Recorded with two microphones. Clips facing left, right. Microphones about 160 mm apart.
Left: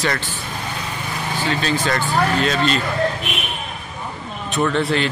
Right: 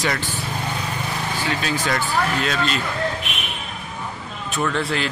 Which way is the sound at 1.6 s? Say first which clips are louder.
Left 2 dB; 10° right (ahead or behind).